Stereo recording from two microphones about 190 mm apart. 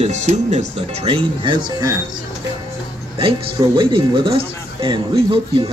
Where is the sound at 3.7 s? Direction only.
25° right (ahead or behind).